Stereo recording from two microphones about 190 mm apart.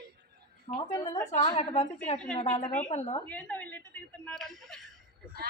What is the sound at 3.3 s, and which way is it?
Speech, 10° left (ahead or behind).